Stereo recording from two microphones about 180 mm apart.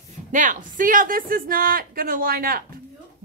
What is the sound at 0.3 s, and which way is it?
A woman's voice, 45° right (ahead or behind).